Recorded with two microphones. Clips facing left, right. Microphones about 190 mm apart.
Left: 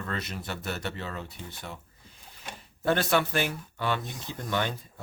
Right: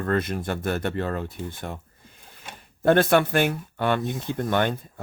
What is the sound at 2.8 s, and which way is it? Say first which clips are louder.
Speech: right 7 dB; 55° right (ahead or behind).